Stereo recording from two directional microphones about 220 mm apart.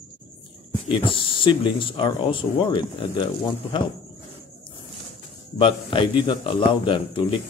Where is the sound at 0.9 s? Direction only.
25° left (ahead or behind).